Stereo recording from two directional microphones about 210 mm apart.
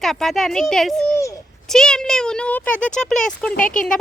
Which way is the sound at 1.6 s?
Centre (ahead or behind).